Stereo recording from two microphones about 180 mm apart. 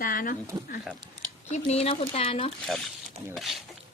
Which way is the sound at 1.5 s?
35° left (ahead or behind).